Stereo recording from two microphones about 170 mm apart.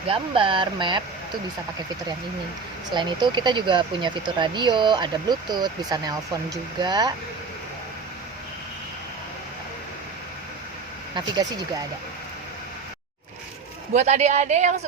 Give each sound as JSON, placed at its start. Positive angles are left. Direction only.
{"t": 0.1, "sound": "speech", "side_deg": -30}
{"t": 2.9, "sound": "speech", "side_deg": -25}
{"t": 11.1, "sound": "speech", "side_deg": -25}
{"t": 13.9, "sound": "a woman's voice", "side_deg": -40}